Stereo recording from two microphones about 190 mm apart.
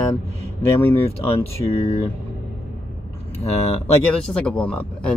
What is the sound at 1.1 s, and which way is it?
Speech, 35° left (ahead or behind).